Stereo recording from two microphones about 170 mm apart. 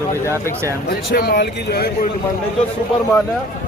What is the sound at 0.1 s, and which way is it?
Speech, 15° left (ahead or behind).